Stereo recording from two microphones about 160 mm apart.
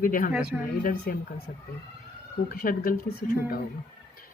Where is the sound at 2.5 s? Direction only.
65° left (ahead or behind).